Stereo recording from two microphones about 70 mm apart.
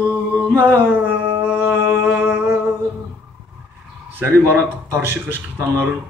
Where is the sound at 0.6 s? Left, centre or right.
Right.